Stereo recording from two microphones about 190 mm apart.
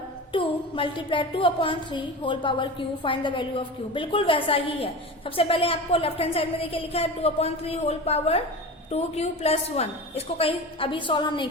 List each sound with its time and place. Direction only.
0.3 s a woman's voice: 25° left (ahead or behind)